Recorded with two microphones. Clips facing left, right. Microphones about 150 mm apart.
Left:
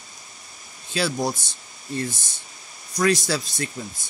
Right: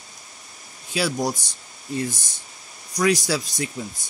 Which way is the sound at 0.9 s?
10° right (ahead or behind).